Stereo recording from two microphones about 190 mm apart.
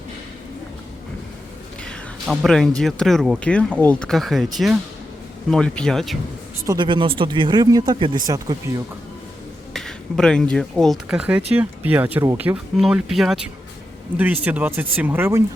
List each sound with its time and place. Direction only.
1.8 s speech: centre (ahead or behind)
6.7 s speech: 25° right (ahead or behind)
9.7 s speech: centre (ahead or behind)
14.4 s speech: 10° right (ahead or behind)